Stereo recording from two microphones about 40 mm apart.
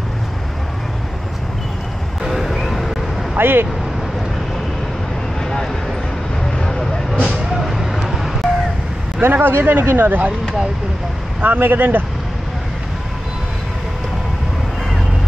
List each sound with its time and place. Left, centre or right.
2.2 s vehicle: centre
3.3 s speech: right
7.6 s vehicle: centre
9.3 s speech: right
11.4 s speech: right